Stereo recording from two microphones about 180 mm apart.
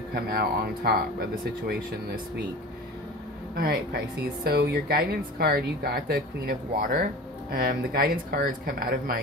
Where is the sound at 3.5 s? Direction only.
55° right (ahead or behind).